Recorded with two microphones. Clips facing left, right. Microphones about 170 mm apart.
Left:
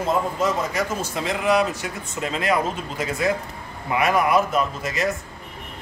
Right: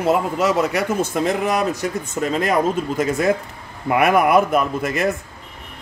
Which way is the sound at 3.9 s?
55° right (ahead or behind).